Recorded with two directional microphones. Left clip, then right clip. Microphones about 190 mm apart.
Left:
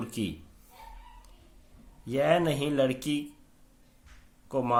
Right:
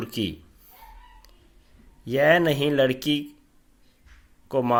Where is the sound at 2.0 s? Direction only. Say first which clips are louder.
Right 6 dB; 35° right (ahead or behind).